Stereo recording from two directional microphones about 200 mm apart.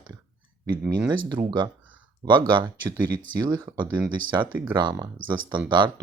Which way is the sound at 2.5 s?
20° right (ahead or behind).